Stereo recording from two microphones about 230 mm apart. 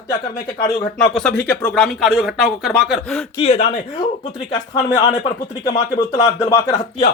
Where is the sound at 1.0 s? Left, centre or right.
Centre.